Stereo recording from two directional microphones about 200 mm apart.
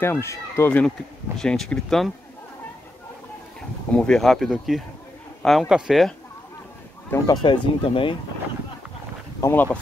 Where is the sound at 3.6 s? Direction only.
5° left (ahead or behind).